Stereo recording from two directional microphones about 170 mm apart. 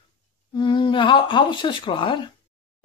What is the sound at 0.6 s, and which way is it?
Speech, 30° left (ahead or behind).